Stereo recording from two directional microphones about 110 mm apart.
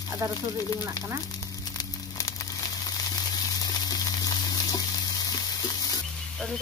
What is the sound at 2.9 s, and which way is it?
Frying, 35° left (ahead or behind).